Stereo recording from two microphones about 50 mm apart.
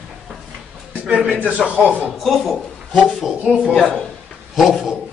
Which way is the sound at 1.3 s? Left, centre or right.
Right.